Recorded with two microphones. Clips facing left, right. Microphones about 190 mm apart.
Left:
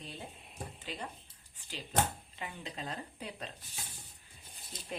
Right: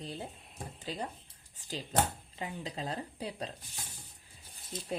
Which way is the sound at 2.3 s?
35° right (ahead or behind).